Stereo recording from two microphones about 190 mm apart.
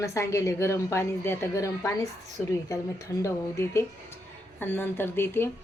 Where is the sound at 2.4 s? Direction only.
5° left (ahead or behind).